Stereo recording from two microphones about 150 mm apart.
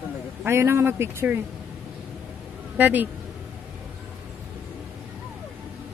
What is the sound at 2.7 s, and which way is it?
Speech, 10° right (ahead or behind).